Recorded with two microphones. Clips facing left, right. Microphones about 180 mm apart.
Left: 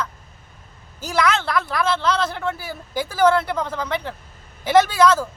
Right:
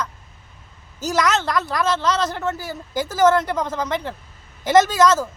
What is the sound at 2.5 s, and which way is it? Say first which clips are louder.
Speech: right 1 dB; 10° left (ahead or behind).